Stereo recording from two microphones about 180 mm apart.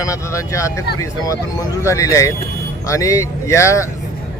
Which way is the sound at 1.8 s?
15° left (ahead or behind).